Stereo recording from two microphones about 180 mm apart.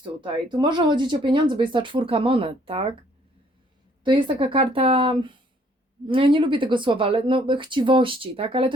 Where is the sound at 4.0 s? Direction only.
25° right (ahead or behind).